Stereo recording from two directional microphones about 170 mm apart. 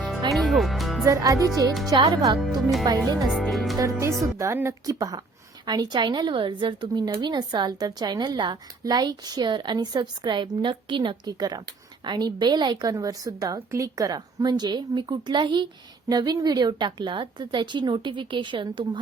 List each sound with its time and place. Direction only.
0.3 s music: centre (ahead or behind)
1.0 s a woman's voice: 20° right (ahead or behind)
2.4 s speech: centre (ahead or behind)
4.4 s a woman's voice: 15° right (ahead or behind)